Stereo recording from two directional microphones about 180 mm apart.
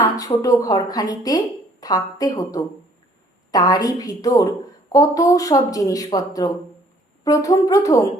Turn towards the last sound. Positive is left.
turn(degrees=20)  # may be behind; listen again after turning